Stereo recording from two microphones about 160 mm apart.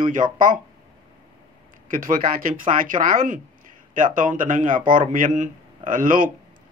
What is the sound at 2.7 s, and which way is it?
Speech, 55° right (ahead or behind).